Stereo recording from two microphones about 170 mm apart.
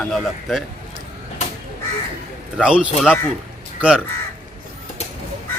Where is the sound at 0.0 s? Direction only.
Centre (ahead or behind).